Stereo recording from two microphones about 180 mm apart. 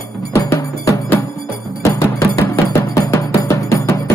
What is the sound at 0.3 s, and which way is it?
Music, 15° left (ahead or behind).